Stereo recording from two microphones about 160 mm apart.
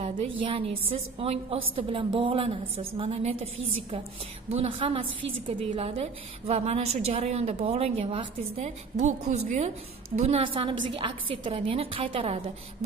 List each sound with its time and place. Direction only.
0.0 s a woman's voice: 35° right (ahead or behind)
4.5 s a woman's voice: 40° right (ahead or behind)